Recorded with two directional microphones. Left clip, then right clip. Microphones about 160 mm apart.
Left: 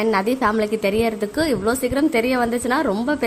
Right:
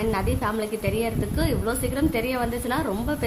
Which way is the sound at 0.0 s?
40° left (ahead or behind).